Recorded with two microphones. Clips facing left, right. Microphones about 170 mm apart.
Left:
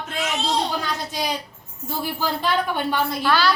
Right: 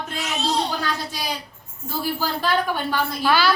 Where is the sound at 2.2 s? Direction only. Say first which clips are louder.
Left 1 dB; 20° left (ahead or behind).